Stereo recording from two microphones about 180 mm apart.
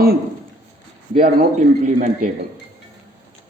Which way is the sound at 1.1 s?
50° right (ahead or behind).